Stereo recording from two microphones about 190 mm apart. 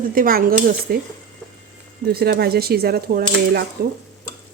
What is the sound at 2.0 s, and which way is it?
Speech, 55° right (ahead or behind).